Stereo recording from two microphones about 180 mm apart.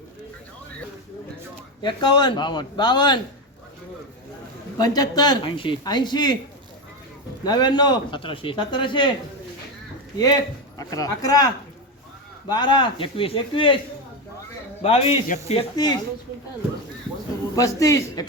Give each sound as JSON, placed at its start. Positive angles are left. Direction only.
{"t": 1.8, "sound": "speech", "side_deg": 25}
{"t": 4.8, "sound": "speech", "side_deg": 20}
{"t": 7.4, "sound": "speech", "side_deg": 25}
{"t": 10.8, "sound": "speech", "side_deg": 20}
{"t": 12.5, "sound": "speech", "side_deg": 25}
{"t": 14.8, "sound": "a man's voice", "side_deg": 35}
{"t": 15.7, "sound": "speech", "side_deg": 25}
{"t": 17.5, "sound": "speech", "side_deg": 20}